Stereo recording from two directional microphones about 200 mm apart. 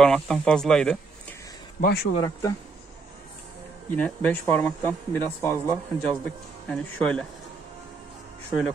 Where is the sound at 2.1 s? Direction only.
20° left (ahead or behind).